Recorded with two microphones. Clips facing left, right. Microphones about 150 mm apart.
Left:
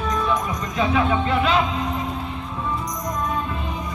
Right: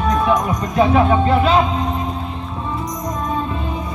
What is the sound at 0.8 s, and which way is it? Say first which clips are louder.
Speech: right 6 dB; 45° right (ahead or behind).